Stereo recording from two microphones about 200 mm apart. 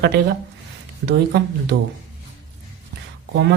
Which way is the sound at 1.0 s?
55° right (ahead or behind).